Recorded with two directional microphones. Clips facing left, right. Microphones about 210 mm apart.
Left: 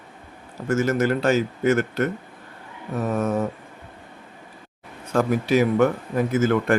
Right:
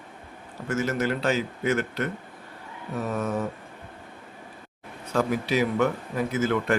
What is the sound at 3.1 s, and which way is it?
Speech, 45° left (ahead or behind).